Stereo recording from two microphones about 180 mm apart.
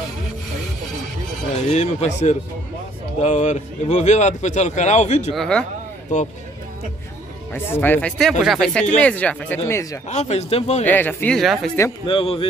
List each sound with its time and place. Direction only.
1.7 s speech: 40° left (ahead or behind)
5.3 s speech: 5° left (ahead or behind)
7.5 s speech: 10° left (ahead or behind)
10.0 s speech: 40° left (ahead or behind)
10.9 s speech: 10° left (ahead or behind)
12.1 s a man's voice: 30° left (ahead or behind)